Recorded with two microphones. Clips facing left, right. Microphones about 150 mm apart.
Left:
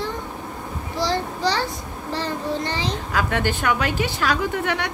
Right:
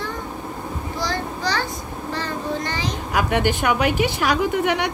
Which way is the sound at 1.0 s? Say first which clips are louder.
Left 4 dB; 30° left (ahead or behind).